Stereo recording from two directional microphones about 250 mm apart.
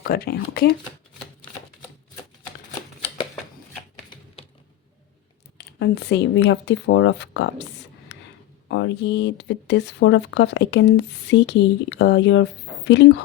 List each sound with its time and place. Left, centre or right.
0.1 s speech: left
5.5 s speech: left
8.7 s speech: left